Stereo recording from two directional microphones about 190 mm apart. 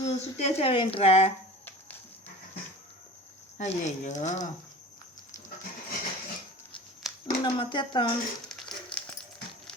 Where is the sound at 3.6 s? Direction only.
35° left (ahead or behind).